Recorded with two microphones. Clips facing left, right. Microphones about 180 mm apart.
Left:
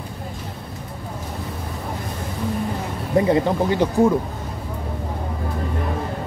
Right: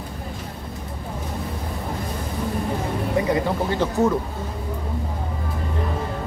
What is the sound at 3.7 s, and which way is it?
Speech, 15° left (ahead or behind).